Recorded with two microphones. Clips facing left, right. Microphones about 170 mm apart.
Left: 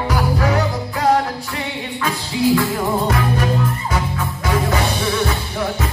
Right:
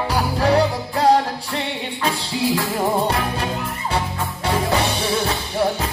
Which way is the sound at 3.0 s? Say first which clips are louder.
Left 3 dB; 30° right (ahead or behind).